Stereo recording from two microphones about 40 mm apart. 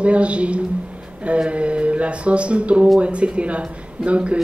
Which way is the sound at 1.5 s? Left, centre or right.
Right.